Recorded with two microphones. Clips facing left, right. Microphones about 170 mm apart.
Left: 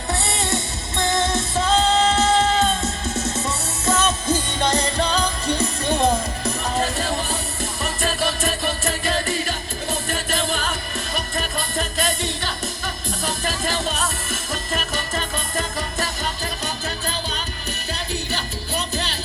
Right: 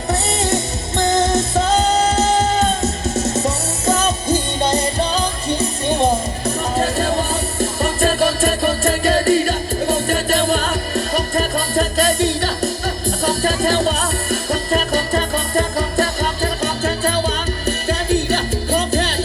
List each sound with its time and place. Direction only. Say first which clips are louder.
0.1 s music: right 5 dB; 40° right (ahead or behind); by 4.9 s 25° right (ahead or behind)
4.9 s music: right 2 dB; 5° right (ahead or behind)
6.7 s music: right 6 dB; 40° right (ahead or behind)